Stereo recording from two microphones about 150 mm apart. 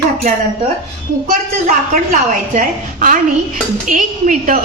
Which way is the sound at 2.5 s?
65° right (ahead or behind).